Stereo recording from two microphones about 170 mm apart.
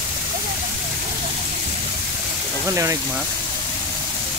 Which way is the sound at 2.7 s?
20° right (ahead or behind).